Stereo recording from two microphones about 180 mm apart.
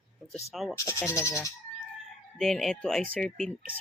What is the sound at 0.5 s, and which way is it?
Chicken, centre (ahead or behind).